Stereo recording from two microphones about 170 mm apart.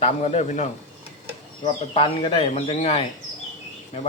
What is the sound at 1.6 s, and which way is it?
Speech, 30° left (ahead or behind).